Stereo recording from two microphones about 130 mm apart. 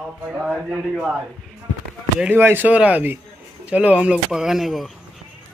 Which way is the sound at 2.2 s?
15° right (ahead or behind).